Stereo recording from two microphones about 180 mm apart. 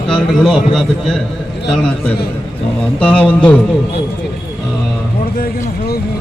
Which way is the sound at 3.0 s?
5° left (ahead or behind).